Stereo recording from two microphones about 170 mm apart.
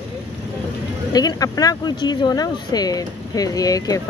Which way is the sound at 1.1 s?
20° left (ahead or behind).